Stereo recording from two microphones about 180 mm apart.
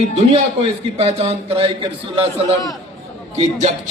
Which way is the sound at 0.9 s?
35° right (ahead or behind).